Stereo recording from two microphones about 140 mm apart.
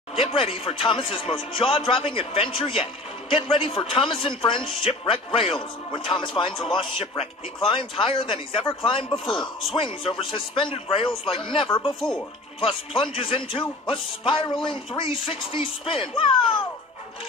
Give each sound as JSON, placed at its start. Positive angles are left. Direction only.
{"t": 0.3, "sound": "speech", "side_deg": 45}
{"t": 12.0, "sound": "speech", "side_deg": 5}
{"t": 12.5, "sound": "speech", "side_deg": 40}